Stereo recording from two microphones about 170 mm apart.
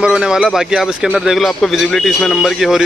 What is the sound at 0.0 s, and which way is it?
A man's voice, 5° right (ahead or behind).